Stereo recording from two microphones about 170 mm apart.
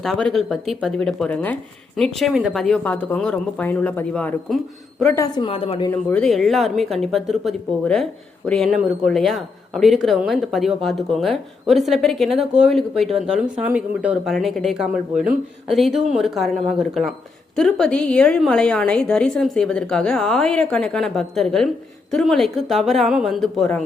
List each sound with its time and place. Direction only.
0.0 s speech: centre (ahead or behind)
5.1 s a woman's voice: 20° left (ahead or behind)
5.5 s a woman's voice: 35° left (ahead or behind)
5.9 s speech: 10° left (ahead or behind)